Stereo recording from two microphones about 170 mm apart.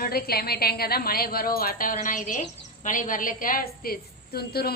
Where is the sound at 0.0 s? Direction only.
65° left (ahead or behind).